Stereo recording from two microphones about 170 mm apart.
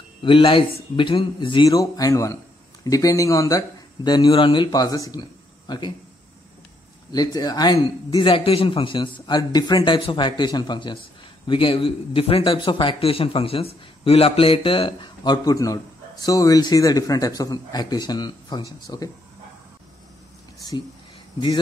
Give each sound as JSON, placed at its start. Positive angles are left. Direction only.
{"t": 0.2, "sound": "a man's voice", "side_deg": 30}
{"t": 7.1, "sound": "a man's voice", "side_deg": 20}